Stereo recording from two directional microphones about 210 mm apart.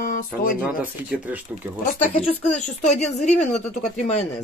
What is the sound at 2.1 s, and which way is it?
Speech, 35° left (ahead or behind).